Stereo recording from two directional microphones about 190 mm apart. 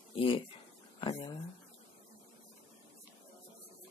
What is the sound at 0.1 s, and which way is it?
Speech, 30° left (ahead or behind).